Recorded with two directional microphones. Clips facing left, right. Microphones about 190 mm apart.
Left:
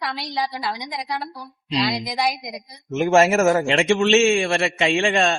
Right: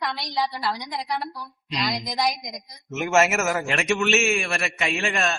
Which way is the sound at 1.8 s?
5° left (ahead or behind).